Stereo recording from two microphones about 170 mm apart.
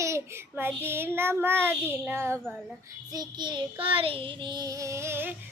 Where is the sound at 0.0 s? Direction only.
15° right (ahead or behind).